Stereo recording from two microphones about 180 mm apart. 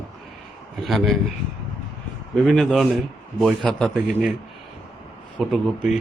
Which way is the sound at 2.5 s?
Centre (ahead or behind).